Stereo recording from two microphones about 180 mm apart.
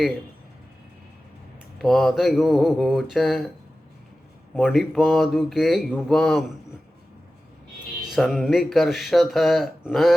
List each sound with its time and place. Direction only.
1.8 s speech: centre (ahead or behind)
4.5 s speech: centre (ahead or behind)
8.1 s speech: centre (ahead or behind)